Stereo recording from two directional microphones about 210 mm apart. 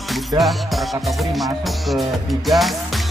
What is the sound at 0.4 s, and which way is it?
Music, centre (ahead or behind).